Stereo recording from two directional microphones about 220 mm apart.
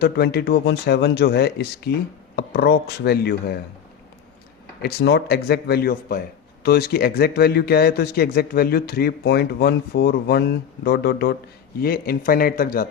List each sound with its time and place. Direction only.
0.0 s speech: 45° left (ahead or behind)
4.8 s speech: 50° left (ahead or behind)